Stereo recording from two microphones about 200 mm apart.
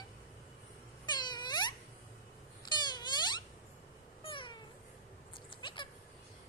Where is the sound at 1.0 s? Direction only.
20° left (ahead or behind).